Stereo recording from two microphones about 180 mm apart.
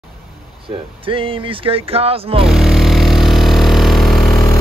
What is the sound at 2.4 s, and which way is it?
Vehicle, centre (ahead or behind).